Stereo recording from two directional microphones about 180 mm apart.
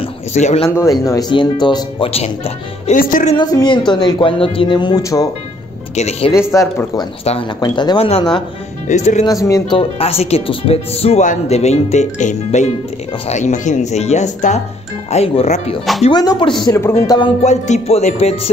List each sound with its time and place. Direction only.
0.0 s speech: 40° left (ahead or behind)
0.7 s speech: 15° left (ahead or behind); by 3.0 s 35° left (ahead or behind)
3.0 s music: 50° left (ahead or behind)
3.3 s speech: 25° left (ahead or behind)
5.9 s speech: 35° left (ahead or behind)
6.5 s speech: 15° left (ahead or behind)
7.2 s speech: 30° left (ahead or behind)
8.8 s speech: 40° left (ahead or behind)
9.2 s speech: 20° left (ahead or behind)
9.8 s speech: 35° left (ahead or behind)
16.0 s speech: 25° left (ahead or behind)
17.4 s speech: 40° left (ahead or behind)